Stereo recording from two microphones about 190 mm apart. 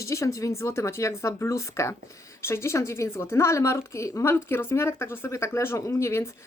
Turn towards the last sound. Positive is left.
turn(degrees=15)  # may be behind; listen again after turning